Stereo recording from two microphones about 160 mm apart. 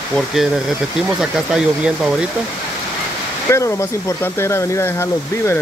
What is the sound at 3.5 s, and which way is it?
Speech, 20° left (ahead or behind).